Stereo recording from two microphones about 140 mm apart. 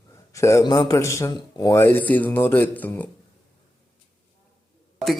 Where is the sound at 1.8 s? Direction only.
15° left (ahead or behind).